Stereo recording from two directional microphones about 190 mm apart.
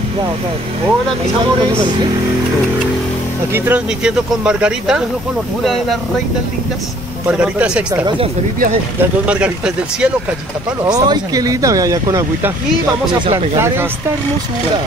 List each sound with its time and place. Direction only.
3.5 s speech: 10° right (ahead or behind)
7.2 s speech: 5° right (ahead or behind)
9.2 s speech: 5° right (ahead or behind)
10.9 s speech: 20° right (ahead or behind)